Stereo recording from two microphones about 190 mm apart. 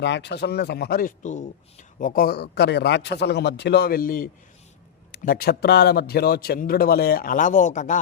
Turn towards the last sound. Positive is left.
turn(degrees=40)  # may be behind; listen again after turning